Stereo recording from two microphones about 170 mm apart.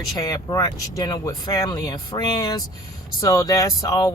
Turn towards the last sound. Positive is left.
turn(degrees=20)  # may be behind; listen again after turning